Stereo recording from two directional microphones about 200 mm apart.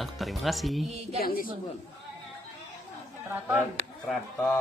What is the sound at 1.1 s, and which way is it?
Speech, 45° left (ahead or behind).